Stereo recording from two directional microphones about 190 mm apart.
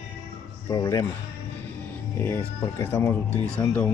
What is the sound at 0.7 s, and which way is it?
Speech, 20° left (ahead or behind).